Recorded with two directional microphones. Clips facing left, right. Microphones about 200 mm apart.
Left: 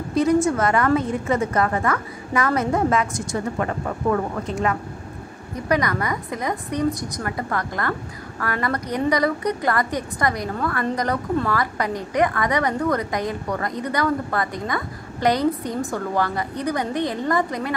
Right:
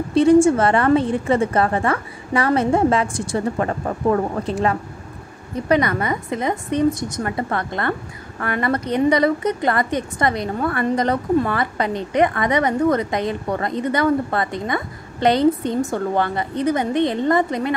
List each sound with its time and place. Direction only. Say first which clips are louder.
0.1 s a woman's voice: right 6 dB; 30° right (ahead or behind)